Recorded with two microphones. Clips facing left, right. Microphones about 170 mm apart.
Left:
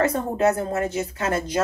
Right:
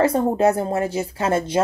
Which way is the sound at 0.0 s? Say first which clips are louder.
Right 3 dB; 30° right (ahead or behind).